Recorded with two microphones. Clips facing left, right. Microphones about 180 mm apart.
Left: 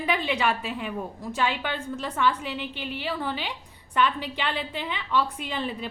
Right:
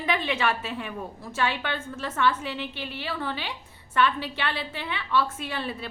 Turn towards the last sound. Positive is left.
turn(degrees=15)  # may be behind; listen again after turning